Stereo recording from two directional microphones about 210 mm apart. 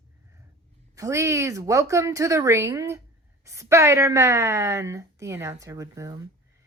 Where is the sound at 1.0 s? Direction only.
15° right (ahead or behind).